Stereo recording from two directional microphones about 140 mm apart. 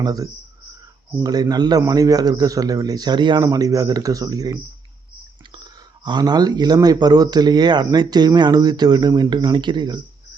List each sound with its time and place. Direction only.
0.0 s speech: 25° right (ahead or behind)